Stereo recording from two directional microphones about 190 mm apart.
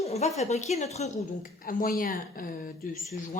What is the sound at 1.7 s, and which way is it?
Speech, 45° left (ahead or behind).